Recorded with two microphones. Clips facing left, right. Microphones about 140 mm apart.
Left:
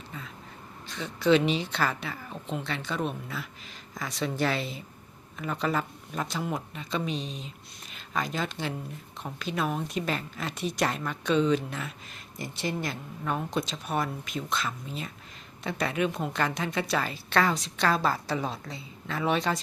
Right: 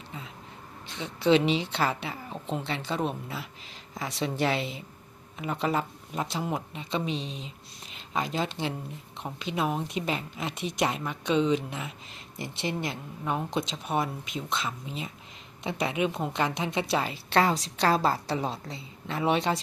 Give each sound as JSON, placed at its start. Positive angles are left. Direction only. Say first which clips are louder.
{"t": 0.9, "sound": "a woman's voice", "louder": "even", "side_deg": -25}